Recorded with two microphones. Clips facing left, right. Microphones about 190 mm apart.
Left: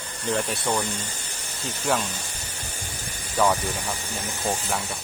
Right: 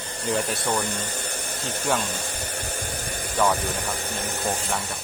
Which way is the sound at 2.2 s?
60° right (ahead or behind).